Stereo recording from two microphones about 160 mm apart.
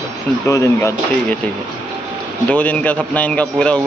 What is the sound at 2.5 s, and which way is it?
Speech, 10° left (ahead or behind).